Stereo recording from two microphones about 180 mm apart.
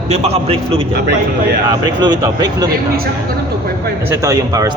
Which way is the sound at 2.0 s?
20° right (ahead or behind).